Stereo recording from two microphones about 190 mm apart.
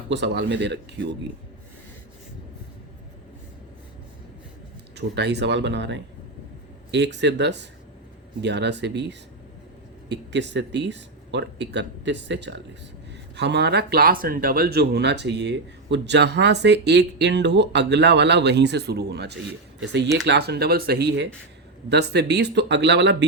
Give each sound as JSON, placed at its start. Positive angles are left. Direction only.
{"t": 0.1, "sound": "speech", "side_deg": -65}
{"t": 4.9, "sound": "speech", "side_deg": -60}